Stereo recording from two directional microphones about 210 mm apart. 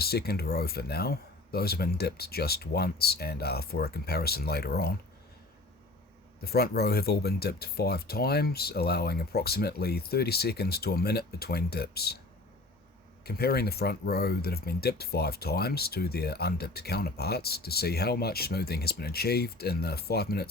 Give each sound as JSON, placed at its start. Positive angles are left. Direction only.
{"t": 0.0, "sound": "speech", "side_deg": 50}
{"t": 6.4, "sound": "speech", "side_deg": 50}
{"t": 13.2, "sound": "speech", "side_deg": 50}